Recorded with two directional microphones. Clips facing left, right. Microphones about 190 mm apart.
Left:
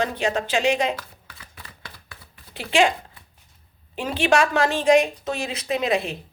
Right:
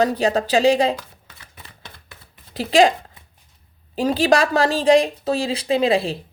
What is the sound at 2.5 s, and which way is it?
Speech, 35° right (ahead or behind).